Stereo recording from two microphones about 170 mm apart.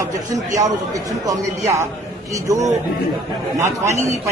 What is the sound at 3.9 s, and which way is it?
Speech, 45° right (ahead or behind).